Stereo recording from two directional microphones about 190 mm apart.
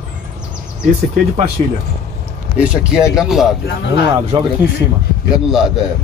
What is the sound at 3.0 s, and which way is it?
Speech, 15° left (ahead or behind).